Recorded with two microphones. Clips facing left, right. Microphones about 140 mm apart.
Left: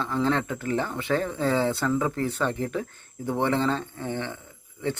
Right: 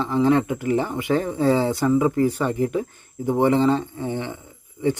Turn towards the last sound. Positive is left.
turn(degrees=-15)  # may be behind; listen again after turning